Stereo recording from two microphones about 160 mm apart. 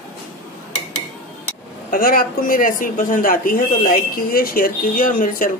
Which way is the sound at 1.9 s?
65° left (ahead or behind).